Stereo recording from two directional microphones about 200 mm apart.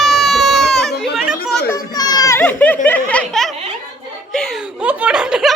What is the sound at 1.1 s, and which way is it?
Chatter, centre (ahead or behind).